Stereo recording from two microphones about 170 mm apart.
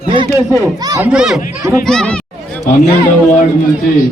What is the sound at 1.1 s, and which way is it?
Speech, 5° right (ahead or behind).